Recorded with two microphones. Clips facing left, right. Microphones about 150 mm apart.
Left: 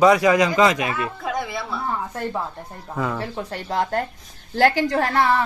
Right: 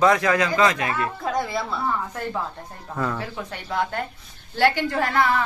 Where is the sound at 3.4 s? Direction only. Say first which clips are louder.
Left 3 dB; 35° left (ahead or behind).